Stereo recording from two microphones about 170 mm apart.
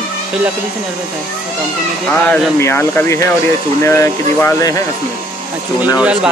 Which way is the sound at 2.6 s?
15° left (ahead or behind).